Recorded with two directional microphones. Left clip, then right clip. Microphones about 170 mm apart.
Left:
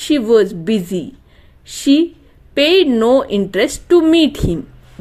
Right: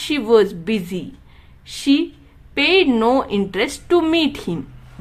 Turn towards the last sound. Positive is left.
turn(degrees=20)  # may be behind; listen again after turning